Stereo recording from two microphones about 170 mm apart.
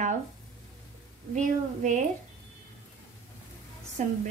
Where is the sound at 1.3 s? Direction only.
45° right (ahead or behind).